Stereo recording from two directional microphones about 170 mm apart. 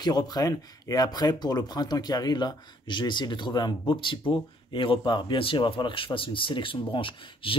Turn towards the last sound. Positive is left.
turn(degrees=30)  # may be behind; listen again after turning